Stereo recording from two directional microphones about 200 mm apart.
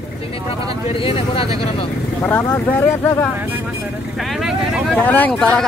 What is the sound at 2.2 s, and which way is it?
Speech, 10° left (ahead or behind).